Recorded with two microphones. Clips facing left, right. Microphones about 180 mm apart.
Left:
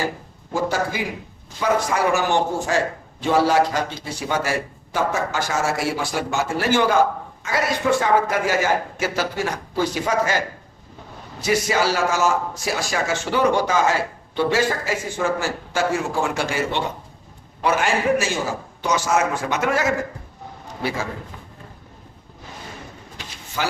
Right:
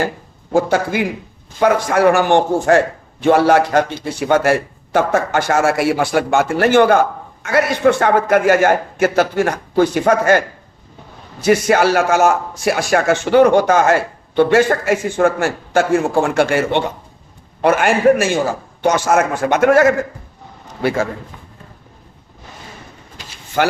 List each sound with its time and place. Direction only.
0.5 s speech: 60° right (ahead or behind)
11.4 s a man's voice: 60° right (ahead or behind)
23.6 s speech: 65° right (ahead or behind)